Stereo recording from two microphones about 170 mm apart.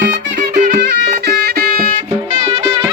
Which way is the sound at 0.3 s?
50° right (ahead or behind).